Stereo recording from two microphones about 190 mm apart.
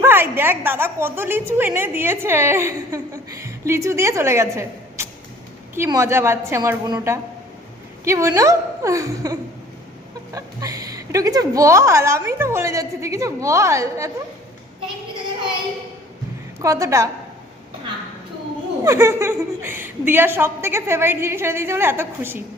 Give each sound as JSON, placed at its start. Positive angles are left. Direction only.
{"t": 0.0, "sound": "a woman's voice", "side_deg": -10}
{"t": 16.6, "sound": "a woman's voice", "side_deg": -15}
{"t": 18.9, "sound": "a woman's voice", "side_deg": -15}